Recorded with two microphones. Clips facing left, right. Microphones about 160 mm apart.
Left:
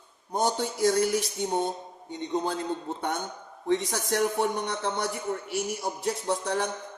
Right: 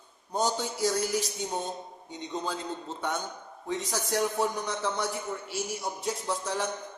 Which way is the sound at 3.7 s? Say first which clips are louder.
Left 4 dB; 65° left (ahead or behind).